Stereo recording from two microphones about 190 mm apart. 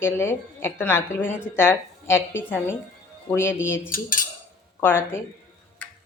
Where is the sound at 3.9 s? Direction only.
45° left (ahead or behind).